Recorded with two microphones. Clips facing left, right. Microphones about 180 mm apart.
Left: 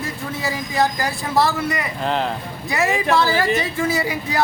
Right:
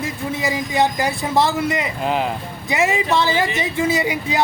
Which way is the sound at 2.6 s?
20° right (ahead or behind).